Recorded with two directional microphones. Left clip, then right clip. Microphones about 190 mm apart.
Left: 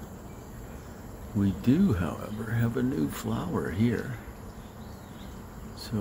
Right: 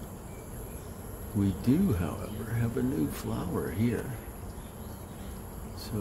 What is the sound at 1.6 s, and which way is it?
Speech, 15° left (ahead or behind).